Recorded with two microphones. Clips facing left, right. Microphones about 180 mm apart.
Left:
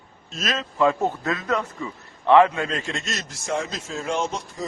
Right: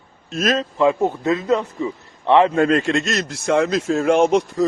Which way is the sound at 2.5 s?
60° right (ahead or behind).